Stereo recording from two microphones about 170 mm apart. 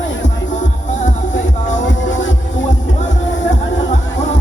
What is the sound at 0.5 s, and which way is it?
Music, 45° left (ahead or behind).